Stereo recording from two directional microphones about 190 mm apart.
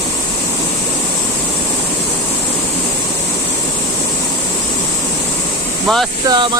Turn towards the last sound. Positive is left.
turn(degrees=-20)  # may be behind; listen again after turning